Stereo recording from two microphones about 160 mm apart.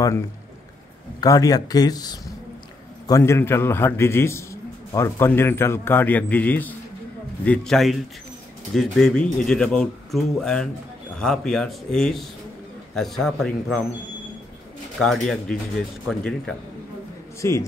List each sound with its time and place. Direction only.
1.2 s a man's voice: 20° left (ahead or behind); by 13.8 s centre (ahead or behind)
15.0 s speech: 5° left (ahead or behind)
17.4 s a man's voice: 15° left (ahead or behind)